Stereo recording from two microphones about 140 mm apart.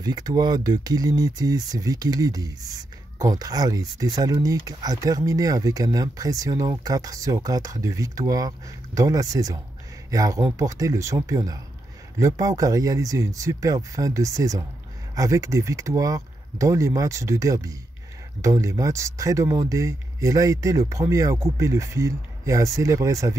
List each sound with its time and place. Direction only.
0.0 s speech: 30° right (ahead or behind)